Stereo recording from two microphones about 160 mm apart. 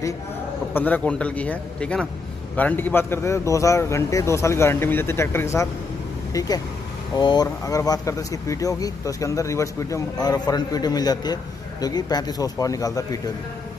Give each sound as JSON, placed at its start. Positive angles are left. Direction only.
{"t": 0.7, "sound": "speech", "side_deg": 10}